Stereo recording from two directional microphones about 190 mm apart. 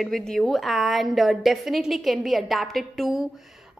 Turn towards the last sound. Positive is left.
turn(degrees=0)  # may be behind; listen again after turning